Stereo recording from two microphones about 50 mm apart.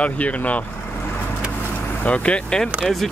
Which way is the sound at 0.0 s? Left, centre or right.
Left.